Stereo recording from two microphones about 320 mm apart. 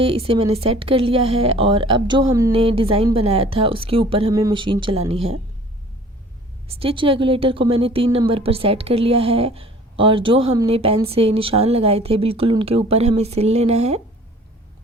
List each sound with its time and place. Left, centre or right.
0.0 s speech: centre
6.7 s speech: centre